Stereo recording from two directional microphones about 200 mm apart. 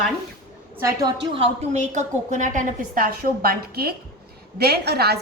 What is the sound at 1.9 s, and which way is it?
A woman's voice, 35° right (ahead or behind).